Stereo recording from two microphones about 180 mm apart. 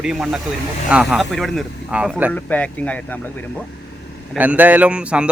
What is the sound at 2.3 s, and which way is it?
Speech, 10° left (ahead or behind).